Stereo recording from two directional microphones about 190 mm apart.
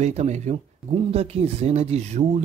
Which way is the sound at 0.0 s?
35° right (ahead or behind).